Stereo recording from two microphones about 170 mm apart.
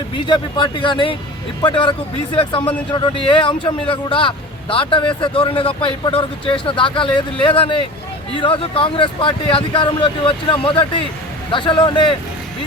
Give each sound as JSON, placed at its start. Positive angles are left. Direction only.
{"t": 0.3, "sound": "a man's voice", "side_deg": 30}